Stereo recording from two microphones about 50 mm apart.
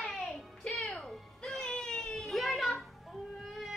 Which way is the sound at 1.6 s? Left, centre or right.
Centre.